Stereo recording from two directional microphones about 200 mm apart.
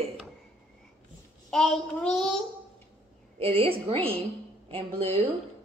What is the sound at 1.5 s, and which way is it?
Speech, 5° left (ahead or behind).